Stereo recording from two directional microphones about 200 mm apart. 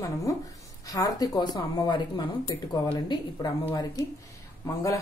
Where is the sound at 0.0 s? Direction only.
15° left (ahead or behind).